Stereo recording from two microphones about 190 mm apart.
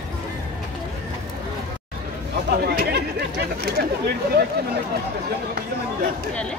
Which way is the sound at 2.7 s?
60° right (ahead or behind).